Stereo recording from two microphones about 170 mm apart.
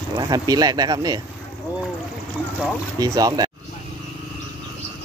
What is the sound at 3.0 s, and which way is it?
Speech, 20° right (ahead or behind).